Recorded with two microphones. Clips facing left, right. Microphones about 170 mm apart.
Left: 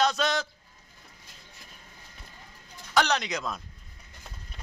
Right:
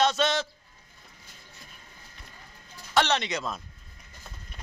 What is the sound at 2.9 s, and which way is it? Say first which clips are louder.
Speech: right 1 dB; centre (ahead or behind).